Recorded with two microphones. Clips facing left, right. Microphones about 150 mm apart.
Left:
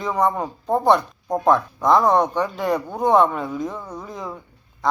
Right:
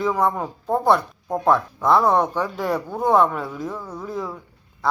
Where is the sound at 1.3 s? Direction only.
15° left (ahead or behind).